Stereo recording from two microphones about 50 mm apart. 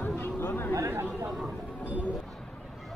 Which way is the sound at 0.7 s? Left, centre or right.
Right.